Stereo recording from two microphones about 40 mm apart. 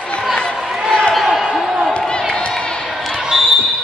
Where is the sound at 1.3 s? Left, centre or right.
Centre.